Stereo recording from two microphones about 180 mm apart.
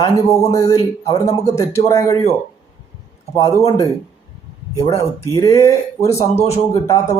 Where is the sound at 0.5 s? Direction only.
15° left (ahead or behind).